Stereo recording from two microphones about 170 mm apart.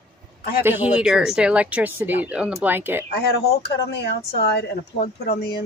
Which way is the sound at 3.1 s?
70° left (ahead or behind).